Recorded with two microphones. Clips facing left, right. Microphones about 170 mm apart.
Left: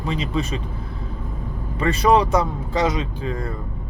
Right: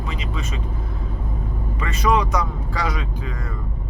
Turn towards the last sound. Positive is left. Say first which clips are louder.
# left 5 dB
turn(degrees=25)  # may be behind; listen again after turning